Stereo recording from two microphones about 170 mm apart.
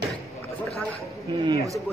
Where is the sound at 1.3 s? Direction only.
25° right (ahead or behind).